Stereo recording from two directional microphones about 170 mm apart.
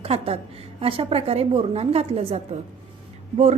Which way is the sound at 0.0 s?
35° right (ahead or behind).